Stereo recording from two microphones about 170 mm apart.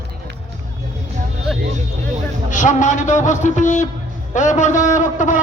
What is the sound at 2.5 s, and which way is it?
A man's voice, 45° left (ahead or behind).